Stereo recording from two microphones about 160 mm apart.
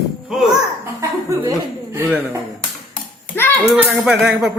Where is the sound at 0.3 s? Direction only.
Centre (ahead or behind).